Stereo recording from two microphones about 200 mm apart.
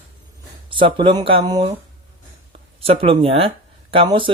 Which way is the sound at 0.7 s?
25° right (ahead or behind).